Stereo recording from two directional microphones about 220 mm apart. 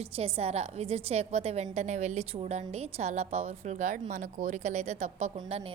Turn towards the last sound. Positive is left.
turn(degrees=-25)  # may be behind; listen again after turning